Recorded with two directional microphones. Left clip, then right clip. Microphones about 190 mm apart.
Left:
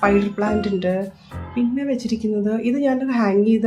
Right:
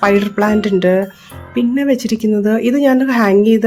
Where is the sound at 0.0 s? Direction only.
45° right (ahead or behind).